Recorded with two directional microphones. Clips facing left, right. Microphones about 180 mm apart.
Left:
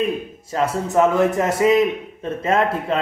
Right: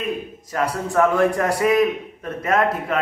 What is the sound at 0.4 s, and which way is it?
A man's voice, 25° left (ahead or behind).